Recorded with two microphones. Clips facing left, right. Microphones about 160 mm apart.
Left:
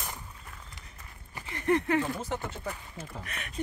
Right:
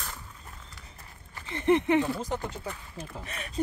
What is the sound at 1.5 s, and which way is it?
Speech, 20° right (ahead or behind).